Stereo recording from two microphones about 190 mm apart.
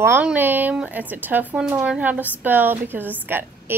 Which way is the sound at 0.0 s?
10° right (ahead or behind).